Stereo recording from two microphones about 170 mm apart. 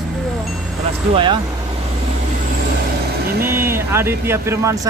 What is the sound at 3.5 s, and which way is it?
Speech, 15° right (ahead or behind).